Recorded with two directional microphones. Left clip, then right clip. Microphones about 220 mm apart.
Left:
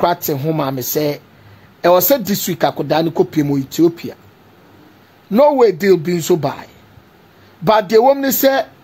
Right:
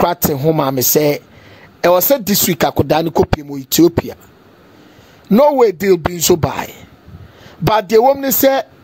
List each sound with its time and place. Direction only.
0.0 s speech: 35° right (ahead or behind)
5.3 s speech: 40° right (ahead or behind)